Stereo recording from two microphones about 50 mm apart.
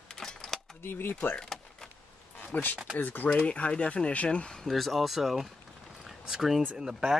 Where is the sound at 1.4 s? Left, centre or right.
Centre.